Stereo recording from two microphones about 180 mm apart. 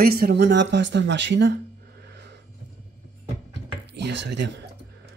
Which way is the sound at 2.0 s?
75° right (ahead or behind).